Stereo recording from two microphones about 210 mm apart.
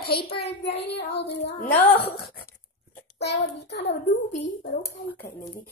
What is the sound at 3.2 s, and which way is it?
Speech, 55° left (ahead or behind).